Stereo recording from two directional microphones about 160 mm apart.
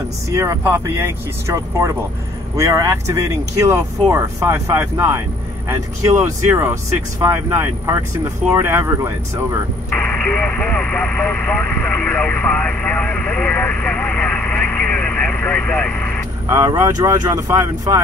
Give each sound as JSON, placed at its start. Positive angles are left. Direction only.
{"t": 0.3, "sound": "speech", "side_deg": -20}
{"t": 9.9, "sound": "speech", "side_deg": 10}
{"t": 16.5, "sound": "speech", "side_deg": -20}